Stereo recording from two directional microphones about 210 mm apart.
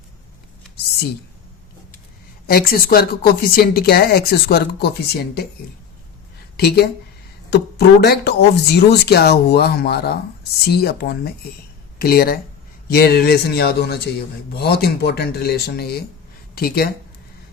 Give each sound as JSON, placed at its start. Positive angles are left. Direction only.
{"t": 2.5, "sound": "speech", "side_deg": 45}
{"t": 6.6, "sound": "speech", "side_deg": 50}